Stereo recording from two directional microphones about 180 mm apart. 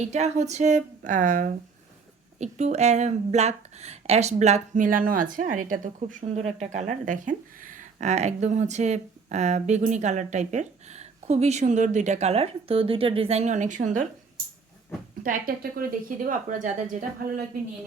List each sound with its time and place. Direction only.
0.1 s speech: 40° right (ahead or behind)
15.2 s speech: 50° right (ahead or behind)